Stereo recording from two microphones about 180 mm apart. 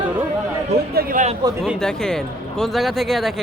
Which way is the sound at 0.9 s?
55° right (ahead or behind).